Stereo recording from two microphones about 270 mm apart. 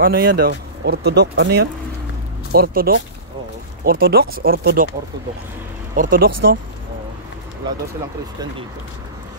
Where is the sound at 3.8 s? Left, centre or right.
Right.